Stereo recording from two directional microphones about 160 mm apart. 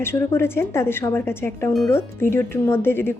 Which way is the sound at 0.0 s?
15° left (ahead or behind).